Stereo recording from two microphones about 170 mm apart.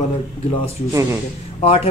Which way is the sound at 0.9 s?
20° right (ahead or behind).